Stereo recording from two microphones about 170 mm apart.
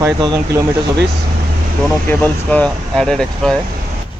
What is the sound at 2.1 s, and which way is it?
Speech, 10° left (ahead or behind).